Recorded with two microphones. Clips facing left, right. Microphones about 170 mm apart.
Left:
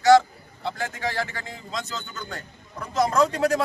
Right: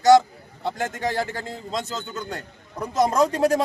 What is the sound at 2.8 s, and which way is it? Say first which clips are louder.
Speech: right 2 dB; 20° right (ahead or behind).